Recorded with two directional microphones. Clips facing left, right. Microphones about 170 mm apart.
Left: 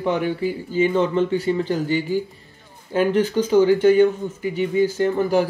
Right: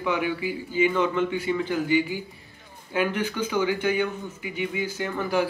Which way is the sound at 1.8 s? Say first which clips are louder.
Left 2 dB; 15° right (ahead or behind).